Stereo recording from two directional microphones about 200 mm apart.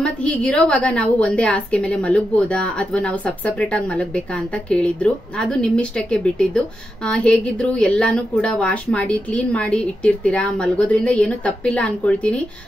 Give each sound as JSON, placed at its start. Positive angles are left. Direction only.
{"t": 0.0, "sound": "a woman's voice", "side_deg": 5}